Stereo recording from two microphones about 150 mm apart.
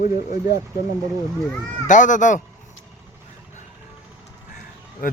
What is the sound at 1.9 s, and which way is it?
Speech, 60° left (ahead or behind).